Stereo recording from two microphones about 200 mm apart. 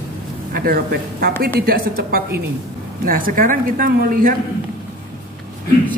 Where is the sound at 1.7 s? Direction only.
50° right (ahead or behind).